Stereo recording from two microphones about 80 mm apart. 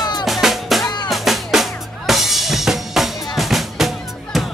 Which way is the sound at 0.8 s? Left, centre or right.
Left.